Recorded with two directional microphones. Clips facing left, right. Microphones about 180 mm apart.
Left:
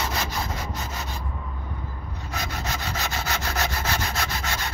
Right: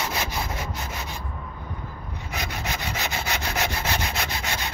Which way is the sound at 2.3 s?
15° right (ahead or behind).